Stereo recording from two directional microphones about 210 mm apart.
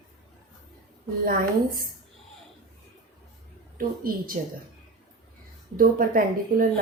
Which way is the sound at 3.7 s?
40° right (ahead or behind).